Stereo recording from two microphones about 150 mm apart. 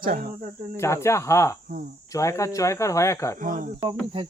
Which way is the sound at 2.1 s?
20° left (ahead or behind).